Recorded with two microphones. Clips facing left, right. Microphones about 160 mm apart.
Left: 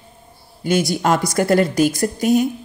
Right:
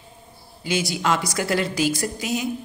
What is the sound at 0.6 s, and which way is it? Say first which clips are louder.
Speech: left 6 dB; 50° left (ahead or behind).